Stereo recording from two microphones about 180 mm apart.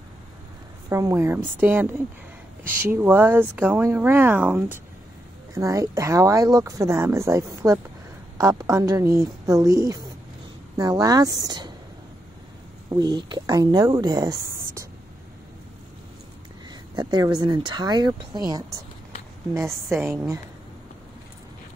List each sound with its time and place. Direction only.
0.8 s speech: 15° right (ahead or behind)
12.9 s speech: 25° right (ahead or behind)
16.9 s speech: 25° right (ahead or behind)